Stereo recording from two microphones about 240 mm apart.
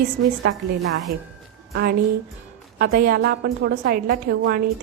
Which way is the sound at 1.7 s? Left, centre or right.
Right.